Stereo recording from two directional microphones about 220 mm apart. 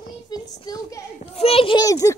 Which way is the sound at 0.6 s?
15° left (ahead or behind).